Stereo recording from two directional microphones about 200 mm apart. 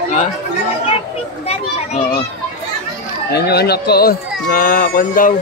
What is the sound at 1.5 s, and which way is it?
Speech, 30° left (ahead or behind).